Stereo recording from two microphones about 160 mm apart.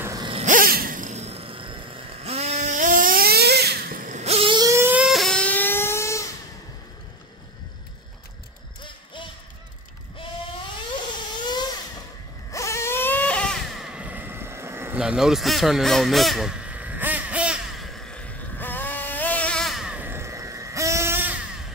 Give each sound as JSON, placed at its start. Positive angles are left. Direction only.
{"t": 0.0, "sound": "a sound", "side_deg": -20}
{"t": 0.5, "sound": "gasp", "side_deg": -65}
{"t": 2.2, "sound": "snoring", "side_deg": -40}
{"t": 5.0, "sound": "a sound", "side_deg": 0}
{"t": 8.8, "sound": "basketball bounce", "side_deg": 30}
{"t": 11.4, "sound": "vehicle", "side_deg": 25}
{"t": 15.0, "sound": "honk", "side_deg": -5}
{"t": 18.6, "sound": "vehicle", "side_deg": 10}